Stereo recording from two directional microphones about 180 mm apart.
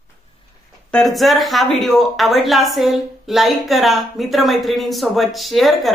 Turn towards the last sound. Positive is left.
turn(degrees=0)  # may be behind; listen again after turning